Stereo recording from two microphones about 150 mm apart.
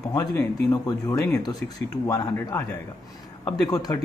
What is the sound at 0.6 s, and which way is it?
A man's voice, 25° left (ahead or behind).